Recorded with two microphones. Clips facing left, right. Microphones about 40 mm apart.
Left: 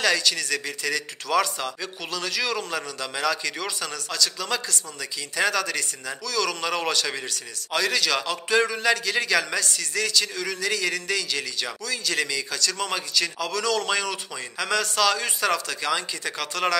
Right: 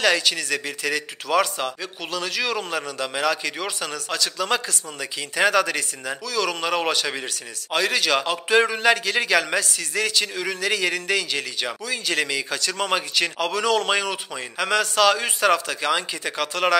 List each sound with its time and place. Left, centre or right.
0.0 s a man's voice: right
4.1 s a man's voice: right
6.2 s a man's voice: centre